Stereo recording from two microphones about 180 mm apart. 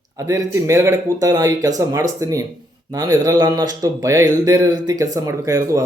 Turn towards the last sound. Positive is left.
turn(degrees=-15)  # may be behind; listen again after turning